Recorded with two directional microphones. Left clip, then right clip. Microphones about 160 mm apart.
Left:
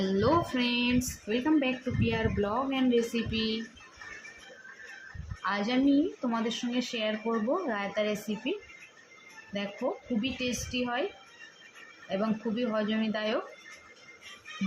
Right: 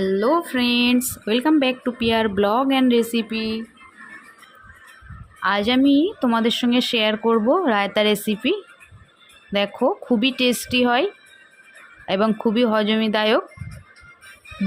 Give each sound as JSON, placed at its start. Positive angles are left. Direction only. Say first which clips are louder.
{"t": 0.0, "sound": "speech", "louder": "right 7 dB", "side_deg": -50}
{"t": 5.4, "sound": "speech", "louder": "right 10 dB", "side_deg": -55}
{"t": 10.2, "sound": "speech", "louder": "right 13 dB", "side_deg": -70}
{"t": 12.0, "sound": "speech", "louder": "right 12 dB", "side_deg": -65}